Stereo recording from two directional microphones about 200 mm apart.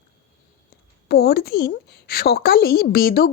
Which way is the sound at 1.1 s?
50° left (ahead or behind).